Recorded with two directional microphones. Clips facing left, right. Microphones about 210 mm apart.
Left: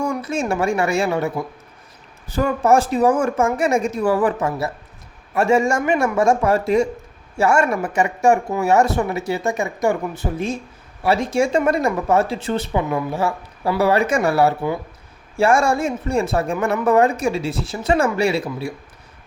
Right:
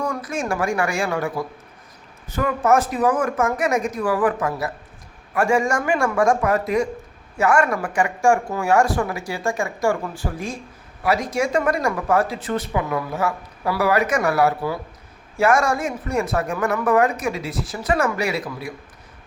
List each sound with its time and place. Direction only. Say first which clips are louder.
0.0 s speech: left 3 dB; 25° left (ahead or behind)